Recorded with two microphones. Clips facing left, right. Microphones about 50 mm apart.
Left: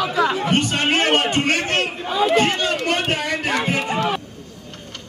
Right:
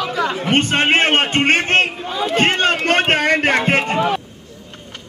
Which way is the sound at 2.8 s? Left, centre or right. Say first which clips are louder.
Right 6 dB; right.